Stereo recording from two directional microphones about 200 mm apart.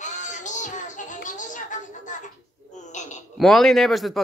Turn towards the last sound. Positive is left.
turn(degrees=0)  # may be behind; listen again after turning